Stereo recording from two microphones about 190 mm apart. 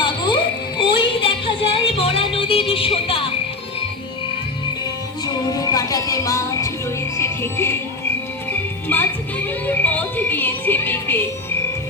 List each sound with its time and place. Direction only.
0.0 s a sound: 25° left (ahead or behind)
0.8 s music: 25° left (ahead or behind)
5.2 s music: 20° left (ahead or behind)
8.9 s music: 10° left (ahead or behind)